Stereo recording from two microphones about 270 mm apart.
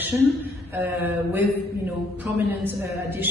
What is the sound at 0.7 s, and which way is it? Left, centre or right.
Speech, centre.